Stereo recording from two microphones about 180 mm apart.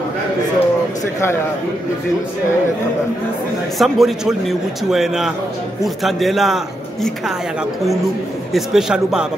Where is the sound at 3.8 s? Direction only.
Centre (ahead or behind).